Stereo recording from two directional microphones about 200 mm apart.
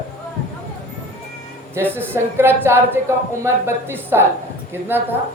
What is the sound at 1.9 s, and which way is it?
A woman's voice, 10° right (ahead or behind).